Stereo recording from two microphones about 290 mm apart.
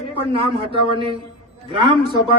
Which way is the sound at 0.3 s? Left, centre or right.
Centre.